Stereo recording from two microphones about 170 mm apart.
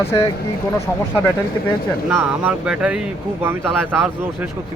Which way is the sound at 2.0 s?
10° right (ahead or behind).